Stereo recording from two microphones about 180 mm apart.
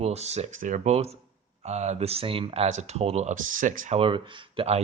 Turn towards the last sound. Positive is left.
turn(degrees=-30)  # may be behind; listen again after turning